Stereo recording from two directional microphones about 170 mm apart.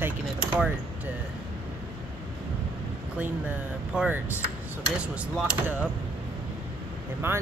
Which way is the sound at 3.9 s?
5° right (ahead or behind).